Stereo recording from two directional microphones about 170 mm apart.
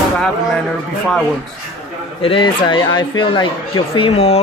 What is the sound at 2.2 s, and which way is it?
Speech, 30° left (ahead or behind).